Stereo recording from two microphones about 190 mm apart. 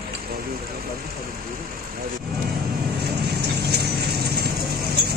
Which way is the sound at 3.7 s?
55° right (ahead or behind).